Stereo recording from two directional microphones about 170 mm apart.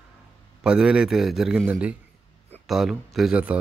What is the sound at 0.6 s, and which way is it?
A man's voice, 5° right (ahead or behind).